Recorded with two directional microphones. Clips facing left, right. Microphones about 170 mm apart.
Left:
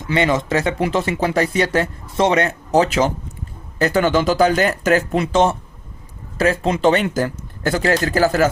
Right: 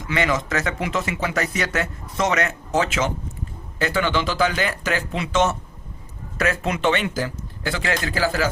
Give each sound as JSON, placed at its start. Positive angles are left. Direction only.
{"t": 0.1, "sound": "speech", "side_deg": 30}